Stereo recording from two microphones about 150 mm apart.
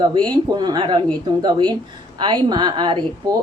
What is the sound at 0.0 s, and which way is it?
A woman's voice, 30° right (ahead or behind).